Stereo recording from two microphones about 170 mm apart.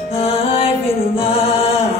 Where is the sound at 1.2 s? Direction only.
35° left (ahead or behind).